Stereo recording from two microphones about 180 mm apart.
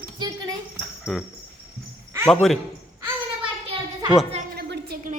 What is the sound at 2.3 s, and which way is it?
Speech, centre (ahead or behind).